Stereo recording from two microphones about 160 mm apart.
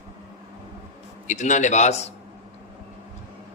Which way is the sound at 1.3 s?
50° left (ahead or behind).